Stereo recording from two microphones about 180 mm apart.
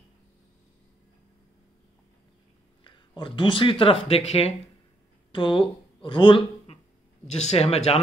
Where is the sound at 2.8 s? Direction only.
25° left (ahead or behind).